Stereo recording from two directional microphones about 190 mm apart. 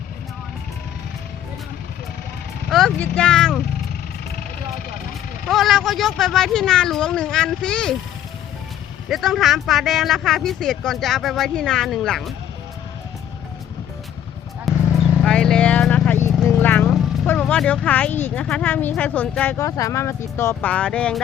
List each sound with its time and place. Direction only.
2.6 s vehicle: centre (ahead or behind)
5.5 s speech: centre (ahead or behind)
9.0 s speech: centre (ahead or behind)
14.7 s vehicle: centre (ahead or behind)
15.2 s speech: 5° left (ahead or behind)